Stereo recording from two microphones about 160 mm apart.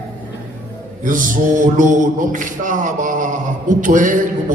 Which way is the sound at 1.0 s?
55° right (ahead or behind).